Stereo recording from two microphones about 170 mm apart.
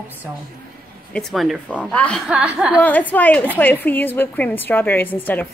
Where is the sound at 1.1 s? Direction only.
Centre (ahead or behind).